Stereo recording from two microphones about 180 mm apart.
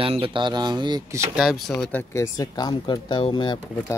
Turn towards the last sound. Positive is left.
turn(degrees=25)  # may be behind; listen again after turning